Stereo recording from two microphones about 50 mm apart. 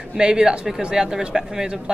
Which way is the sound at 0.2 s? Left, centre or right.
Centre.